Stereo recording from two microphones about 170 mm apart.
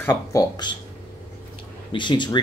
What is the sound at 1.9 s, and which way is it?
Speech, 25° left (ahead or behind).